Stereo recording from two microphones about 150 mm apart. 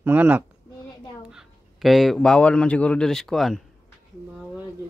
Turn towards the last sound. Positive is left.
turn(degrees=0)  # may be behind; listen again after turning